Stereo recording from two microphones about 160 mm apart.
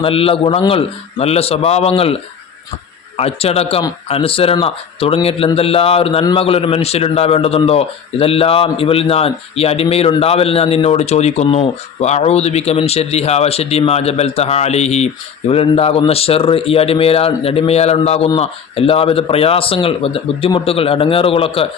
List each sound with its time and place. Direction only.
0.0 s speech: 35° left (ahead or behind)
3.2 s speech: 40° left (ahead or behind)